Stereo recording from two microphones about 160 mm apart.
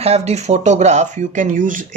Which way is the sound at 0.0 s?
40° right (ahead or behind).